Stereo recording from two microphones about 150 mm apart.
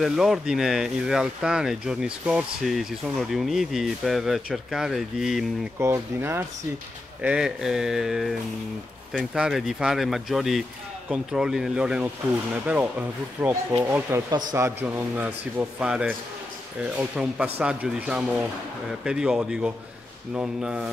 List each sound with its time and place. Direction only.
0.0 s speech: centre (ahead or behind)
5.8 s a man's voice: 20° right (ahead or behind)
7.2 s a man's voice: 5° right (ahead or behind)